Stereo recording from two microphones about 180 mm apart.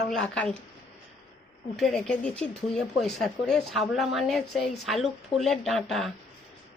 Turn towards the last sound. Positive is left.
turn(degrees=0)  # may be behind; listen again after turning